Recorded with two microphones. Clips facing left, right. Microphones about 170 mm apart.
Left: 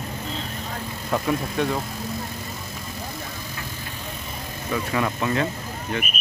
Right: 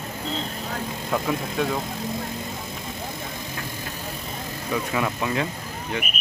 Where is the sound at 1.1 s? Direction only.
Centre (ahead or behind).